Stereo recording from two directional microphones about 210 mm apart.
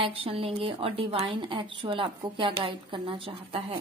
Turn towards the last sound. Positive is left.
turn(degrees=-25)  # may be behind; listen again after turning